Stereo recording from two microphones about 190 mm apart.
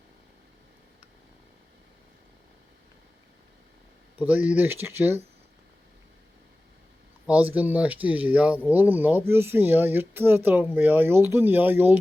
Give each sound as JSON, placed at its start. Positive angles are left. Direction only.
{"t": 4.2, "sound": "speech", "side_deg": -5}
{"t": 7.3, "sound": "speech", "side_deg": -10}